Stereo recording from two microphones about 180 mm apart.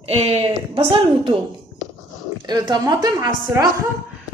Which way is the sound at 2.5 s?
25° right (ahead or behind).